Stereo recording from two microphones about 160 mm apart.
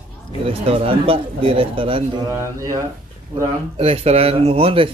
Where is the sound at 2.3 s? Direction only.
20° right (ahead or behind).